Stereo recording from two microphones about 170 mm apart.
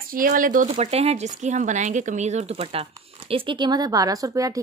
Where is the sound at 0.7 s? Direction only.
35° right (ahead or behind).